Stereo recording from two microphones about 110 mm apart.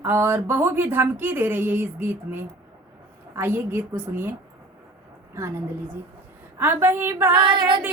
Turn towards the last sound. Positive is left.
turn(degrees=-50)  # may be behind; listen again after turning